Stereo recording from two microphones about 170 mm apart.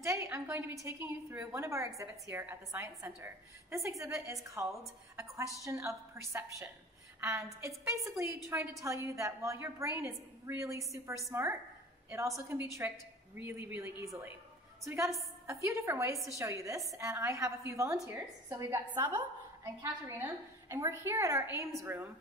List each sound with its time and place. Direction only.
0.0 s a woman's voice: 15° right (ahead or behind)